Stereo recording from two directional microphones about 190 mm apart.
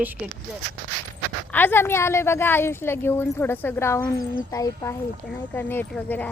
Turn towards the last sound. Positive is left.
turn(degrees=10)  # may be behind; listen again after turning